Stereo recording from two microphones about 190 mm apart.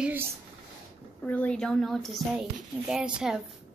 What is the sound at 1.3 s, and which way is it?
Speech, 5° left (ahead or behind).